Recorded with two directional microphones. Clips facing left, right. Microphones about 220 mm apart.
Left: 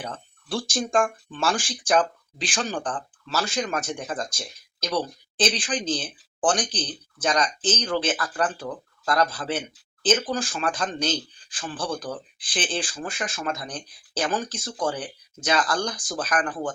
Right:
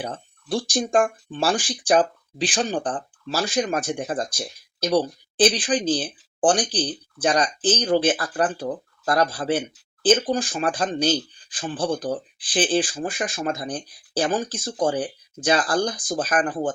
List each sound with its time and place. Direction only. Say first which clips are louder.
0.0 s speech: right 4 dB; 35° right (ahead or behind)